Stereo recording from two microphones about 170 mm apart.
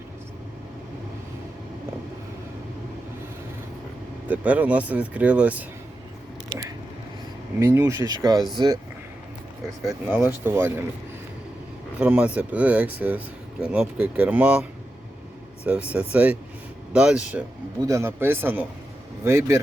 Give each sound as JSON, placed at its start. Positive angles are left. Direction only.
{"t": 4.3, "sound": "speech", "side_deg": -10}
{"t": 7.6, "sound": "speech", "side_deg": -15}
{"t": 10.1, "sound": "speech", "side_deg": -10}
{"t": 11.9, "sound": "speech", "side_deg": -10}